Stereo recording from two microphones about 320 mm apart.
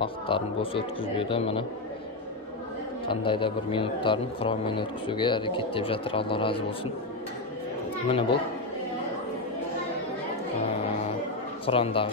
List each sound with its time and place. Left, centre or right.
0.0 s a man's voice: centre
3.1 s a man's voice: centre
8.1 s a man's voice: centre
11.6 s a man's voice: centre